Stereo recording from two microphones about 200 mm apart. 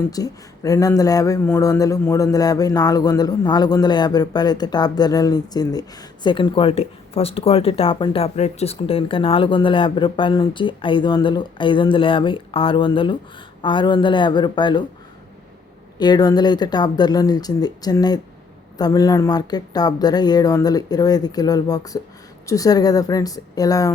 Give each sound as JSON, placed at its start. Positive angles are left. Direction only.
{"t": 0.1, "sound": "speech", "side_deg": 15}
{"t": 16.0, "sound": "a woman's voice", "side_deg": 20}